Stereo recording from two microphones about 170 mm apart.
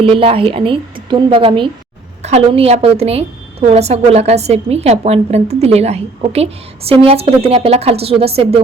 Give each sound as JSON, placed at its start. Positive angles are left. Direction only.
{"t": 0.0, "sound": "a woman's voice", "side_deg": -30}